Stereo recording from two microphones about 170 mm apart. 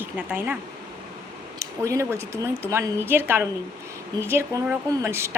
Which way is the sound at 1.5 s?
20° right (ahead or behind).